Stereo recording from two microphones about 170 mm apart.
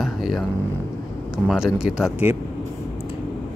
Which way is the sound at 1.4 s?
5° right (ahead or behind).